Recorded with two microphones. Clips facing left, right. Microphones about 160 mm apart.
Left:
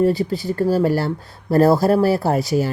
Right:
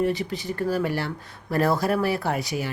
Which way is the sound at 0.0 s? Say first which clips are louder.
Left 7 dB; 35° left (ahead or behind).